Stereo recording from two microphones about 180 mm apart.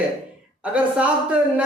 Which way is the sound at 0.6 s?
5° right (ahead or behind).